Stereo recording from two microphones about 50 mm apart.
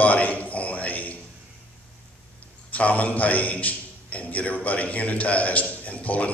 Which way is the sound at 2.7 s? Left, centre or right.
Left.